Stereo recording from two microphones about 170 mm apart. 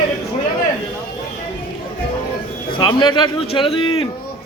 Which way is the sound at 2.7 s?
30° left (ahead or behind).